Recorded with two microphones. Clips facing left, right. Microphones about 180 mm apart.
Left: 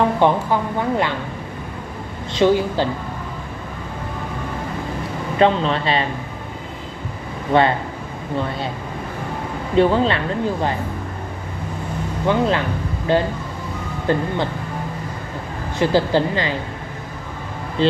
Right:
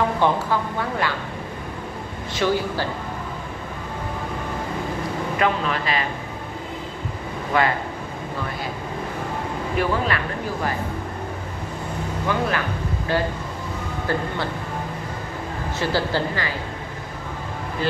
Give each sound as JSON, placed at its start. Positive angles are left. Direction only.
{"t": 0.2, "sound": "a woman's voice", "side_deg": 20}
{"t": 2.3, "sound": "a woman's voice", "side_deg": 20}
{"t": 5.4, "sound": "a woman's voice", "side_deg": 30}
{"t": 7.5, "sound": "a woman's voice", "side_deg": 30}
{"t": 9.8, "sound": "a woman's voice", "side_deg": 25}
{"t": 12.3, "sound": "a woman's voice", "side_deg": 20}
{"t": 15.8, "sound": "speech", "side_deg": 20}
{"t": 17.8, "sound": "speech", "side_deg": 25}